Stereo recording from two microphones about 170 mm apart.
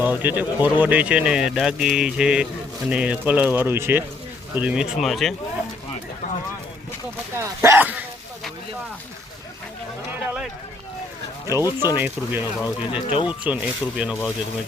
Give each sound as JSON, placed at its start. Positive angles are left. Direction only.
{"t": 0.0, "sound": "speech", "side_deg": -10}
{"t": 7.3, "sound": "speech", "side_deg": -15}
{"t": 11.6, "sound": "speech", "side_deg": 25}
{"t": 11.9, "sound": "speech", "side_deg": -10}
{"t": 13.1, "sound": "speech", "side_deg": 30}
{"t": 13.4, "sound": "speech", "side_deg": -5}